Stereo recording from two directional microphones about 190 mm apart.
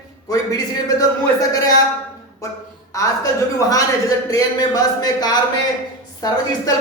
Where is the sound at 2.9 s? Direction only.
15° left (ahead or behind).